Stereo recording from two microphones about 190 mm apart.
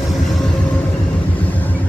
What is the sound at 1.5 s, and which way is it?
Vehicle, 10° left (ahead or behind).